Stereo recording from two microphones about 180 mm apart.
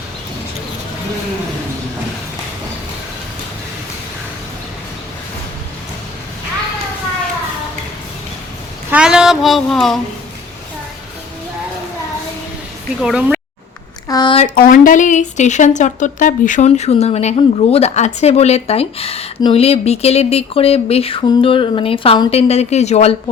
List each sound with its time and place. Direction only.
8.9 s child singing: 5° right (ahead or behind)
13.0 s speech: 5° right (ahead or behind)
14.1 s a sound: 20° left (ahead or behind)
14.3 s speech: 50° left (ahead or behind)